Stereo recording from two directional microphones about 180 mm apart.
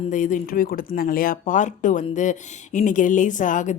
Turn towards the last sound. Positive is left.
turn(degrees=45)  # may be behind; listen again after turning